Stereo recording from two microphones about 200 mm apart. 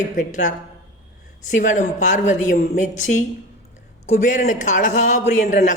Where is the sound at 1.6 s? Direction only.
40° left (ahead or behind).